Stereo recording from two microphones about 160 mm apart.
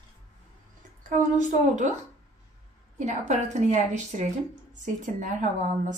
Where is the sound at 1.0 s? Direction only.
50° right (ahead or behind).